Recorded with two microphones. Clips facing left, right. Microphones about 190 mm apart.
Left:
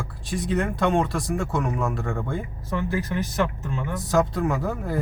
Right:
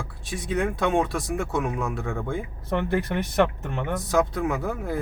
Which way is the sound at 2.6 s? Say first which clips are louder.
Right 2 dB; 60° right (ahead or behind).